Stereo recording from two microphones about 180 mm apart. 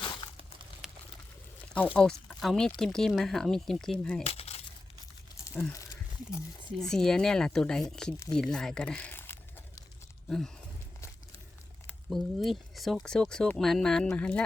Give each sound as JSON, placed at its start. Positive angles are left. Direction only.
{"t": 0.0, "sound": "crumpling", "side_deg": 25}
{"t": 0.8, "sound": "a sound", "side_deg": 0}
{"t": 2.0, "sound": "speech", "side_deg": 5}
{"t": 4.2, "sound": "coin", "side_deg": 35}
{"t": 6.7, "sound": "speech", "side_deg": 5}
{"t": 8.3, "sound": "crumpling", "side_deg": 5}
{"t": 10.2, "sound": "a sound", "side_deg": 0}
{"t": 11.9, "sound": "speech", "side_deg": 0}